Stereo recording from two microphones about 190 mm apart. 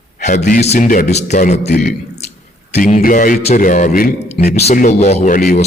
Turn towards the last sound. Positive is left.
turn(degrees=50)  # may be behind; listen again after turning